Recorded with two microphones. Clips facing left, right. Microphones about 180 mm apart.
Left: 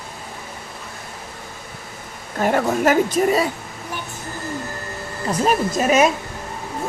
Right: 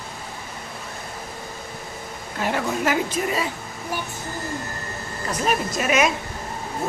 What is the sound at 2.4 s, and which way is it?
A woman's voice, 50° left (ahead or behind).